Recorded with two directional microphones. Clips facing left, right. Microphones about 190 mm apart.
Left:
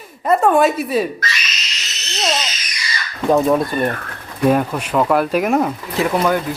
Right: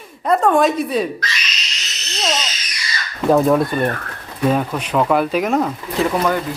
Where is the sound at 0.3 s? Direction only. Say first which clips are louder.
Left 1 dB; 5° left (ahead or behind).